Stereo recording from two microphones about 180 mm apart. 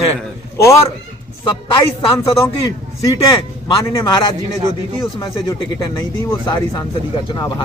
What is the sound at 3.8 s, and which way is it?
Speech, 25° left (ahead or behind).